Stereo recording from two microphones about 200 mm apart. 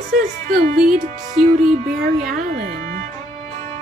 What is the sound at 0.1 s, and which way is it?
Speech, 40° right (ahead or behind).